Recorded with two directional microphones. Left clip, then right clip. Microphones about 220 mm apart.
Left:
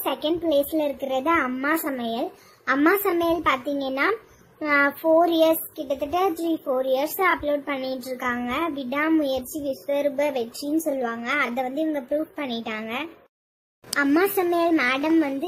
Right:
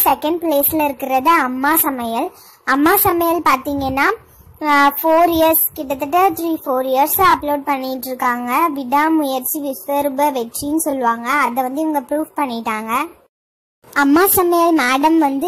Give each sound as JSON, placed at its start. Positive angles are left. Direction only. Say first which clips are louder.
{"t": 0.0, "sound": "a child's voice", "louder": "right 9 dB", "side_deg": -15}